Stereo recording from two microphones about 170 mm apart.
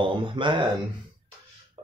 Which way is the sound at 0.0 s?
30° right (ahead or behind).